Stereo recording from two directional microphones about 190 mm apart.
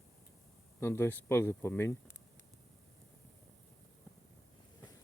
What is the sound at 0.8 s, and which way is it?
Speech, 10° left (ahead or behind).